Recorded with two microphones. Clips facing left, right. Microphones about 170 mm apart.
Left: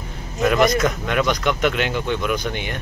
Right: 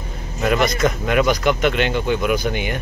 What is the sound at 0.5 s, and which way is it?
Speech, centre (ahead or behind).